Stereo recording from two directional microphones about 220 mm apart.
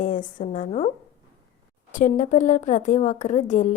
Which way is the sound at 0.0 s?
35° left (ahead or behind).